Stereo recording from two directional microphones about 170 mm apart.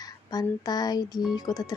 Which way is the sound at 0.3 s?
20° left (ahead or behind).